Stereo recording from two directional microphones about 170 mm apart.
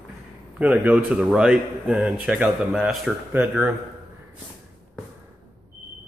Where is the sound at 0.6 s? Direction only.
10° right (ahead or behind).